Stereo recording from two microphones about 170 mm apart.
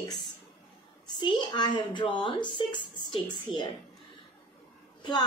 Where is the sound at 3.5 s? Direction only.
Centre (ahead or behind).